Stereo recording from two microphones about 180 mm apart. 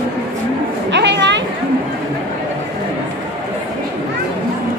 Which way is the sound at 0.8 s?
75° right (ahead or behind).